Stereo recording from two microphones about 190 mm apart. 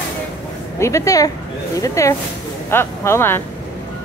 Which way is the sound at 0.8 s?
15° left (ahead or behind).